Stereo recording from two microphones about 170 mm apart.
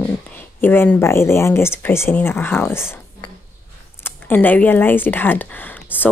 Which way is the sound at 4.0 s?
10° left (ahead or behind).